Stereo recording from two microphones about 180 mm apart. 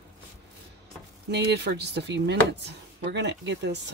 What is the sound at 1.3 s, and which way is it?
Speech, 70° right (ahead or behind).